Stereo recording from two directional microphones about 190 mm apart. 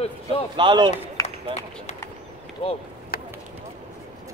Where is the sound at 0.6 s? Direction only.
25° right (ahead or behind).